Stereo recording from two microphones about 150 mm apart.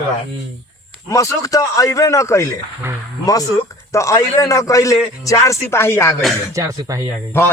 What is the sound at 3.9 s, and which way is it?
Speech, 20° left (ahead or behind).